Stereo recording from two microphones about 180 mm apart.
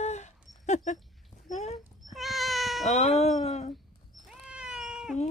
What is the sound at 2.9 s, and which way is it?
Speech, 40° left (ahead or behind).